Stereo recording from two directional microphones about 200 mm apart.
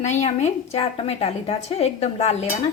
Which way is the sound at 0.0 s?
35° left (ahead or behind).